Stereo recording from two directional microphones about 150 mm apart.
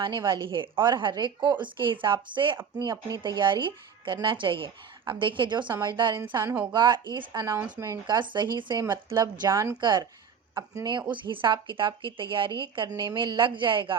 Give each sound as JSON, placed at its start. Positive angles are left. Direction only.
{"t": 0.0, "sound": "speech", "side_deg": -30}
{"t": 6.4, "sound": "a woman's voice", "side_deg": -10}
{"t": 6.7, "sound": "a woman's voice", "side_deg": -30}
{"t": 8.0, "sound": "speech", "side_deg": -30}
{"t": 8.8, "sound": "a woman's voice", "side_deg": -20}
{"t": 11.1, "sound": "speech", "side_deg": -35}